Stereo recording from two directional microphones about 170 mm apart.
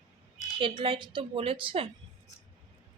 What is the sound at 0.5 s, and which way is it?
A woman's voice, 30° right (ahead or behind).